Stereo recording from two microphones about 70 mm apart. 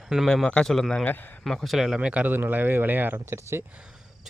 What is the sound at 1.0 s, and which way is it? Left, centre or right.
Speech, left.